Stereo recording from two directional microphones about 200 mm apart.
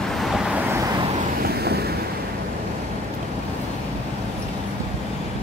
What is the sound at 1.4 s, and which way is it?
Waves, 55° right (ahead or behind).